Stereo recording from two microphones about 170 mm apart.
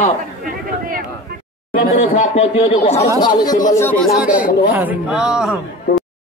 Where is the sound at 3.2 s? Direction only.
25° left (ahead or behind).